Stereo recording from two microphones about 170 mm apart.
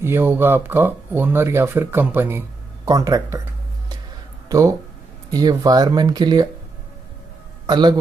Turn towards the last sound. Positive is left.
turn(degrees=-25)  # may be behind; listen again after turning